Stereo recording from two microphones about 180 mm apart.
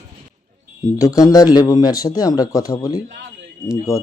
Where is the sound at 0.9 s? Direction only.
20° left (ahead or behind).